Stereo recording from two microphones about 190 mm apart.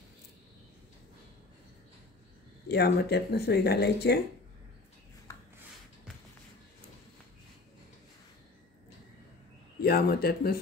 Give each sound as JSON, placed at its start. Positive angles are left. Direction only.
{"t": 2.7, "sound": "speech", "side_deg": 60}
{"t": 9.8, "sound": "speech", "side_deg": 55}